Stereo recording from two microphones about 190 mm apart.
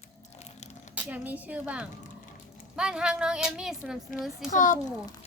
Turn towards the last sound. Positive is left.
turn(degrees=40)  # may be behind; listen again after turning